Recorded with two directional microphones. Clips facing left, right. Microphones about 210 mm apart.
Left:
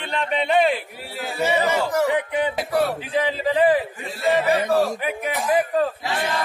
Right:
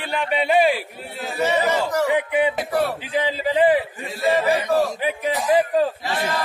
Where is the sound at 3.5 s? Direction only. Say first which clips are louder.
Right 1 dB; 20° right (ahead or behind).